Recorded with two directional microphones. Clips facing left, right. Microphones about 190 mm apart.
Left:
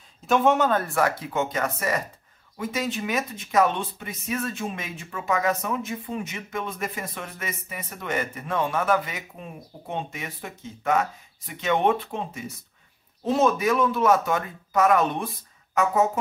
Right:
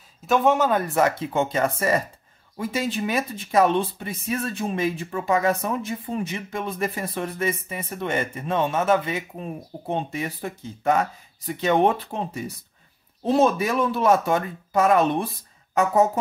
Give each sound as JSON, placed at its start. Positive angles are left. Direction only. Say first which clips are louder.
{"t": 0.3, "sound": "a man's voice", "louder": "right 1 dB", "side_deg": 0}
{"t": 0.7, "sound": "speech", "louder": "right 3 dB", "side_deg": -20}
{"t": 13.2, "sound": "speech", "louder": "right 2 dB", "side_deg": -30}